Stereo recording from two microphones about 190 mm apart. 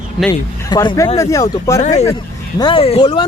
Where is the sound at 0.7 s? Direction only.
20° left (ahead or behind).